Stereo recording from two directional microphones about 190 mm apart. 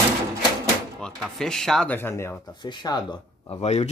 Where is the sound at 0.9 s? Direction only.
Centre (ahead or behind); by 3.2 s 25° left (ahead or behind).